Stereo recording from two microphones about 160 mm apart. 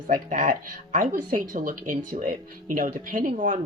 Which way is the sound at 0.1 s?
55° right (ahead or behind).